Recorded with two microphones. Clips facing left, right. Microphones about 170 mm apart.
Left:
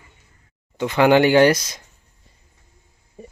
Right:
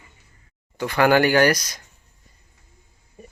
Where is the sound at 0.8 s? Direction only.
20° left (ahead or behind).